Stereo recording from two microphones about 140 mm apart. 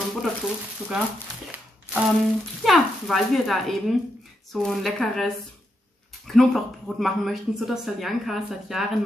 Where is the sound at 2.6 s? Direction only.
Centre (ahead or behind).